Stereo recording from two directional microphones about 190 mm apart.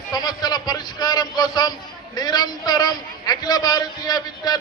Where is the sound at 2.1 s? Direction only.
20° left (ahead or behind).